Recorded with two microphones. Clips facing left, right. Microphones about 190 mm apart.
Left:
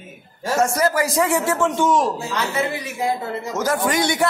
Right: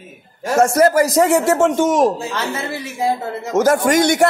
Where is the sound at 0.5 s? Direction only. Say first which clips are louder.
Right 6 dB; 45° right (ahead or behind).